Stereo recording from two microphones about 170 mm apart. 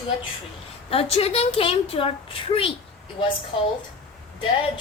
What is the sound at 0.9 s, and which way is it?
A woman's voice, 35° left (ahead or behind).